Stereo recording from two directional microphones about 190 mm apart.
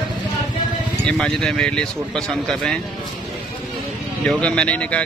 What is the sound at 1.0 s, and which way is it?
Speech, 5° left (ahead or behind).